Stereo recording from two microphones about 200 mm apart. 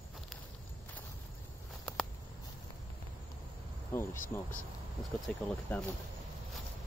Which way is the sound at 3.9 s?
10° left (ahead or behind).